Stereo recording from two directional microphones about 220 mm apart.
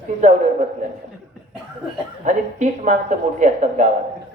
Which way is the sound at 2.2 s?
35° right (ahead or behind).